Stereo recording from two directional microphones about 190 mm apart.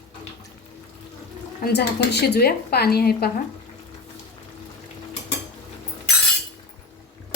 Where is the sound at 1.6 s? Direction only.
60° left (ahead or behind).